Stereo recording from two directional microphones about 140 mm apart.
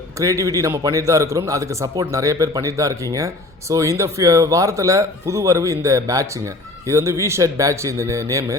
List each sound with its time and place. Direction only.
0.2 s a man's voice: 25° right (ahead or behind)